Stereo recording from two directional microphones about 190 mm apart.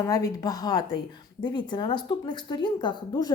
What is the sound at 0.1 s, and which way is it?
Speech, 20° left (ahead or behind).